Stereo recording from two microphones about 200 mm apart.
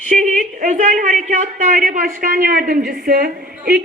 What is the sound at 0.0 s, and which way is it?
A woman's voice, 40° right (ahead or behind).